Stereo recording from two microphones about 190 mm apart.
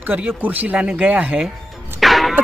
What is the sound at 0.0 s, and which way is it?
Speech, 10° right (ahead or behind).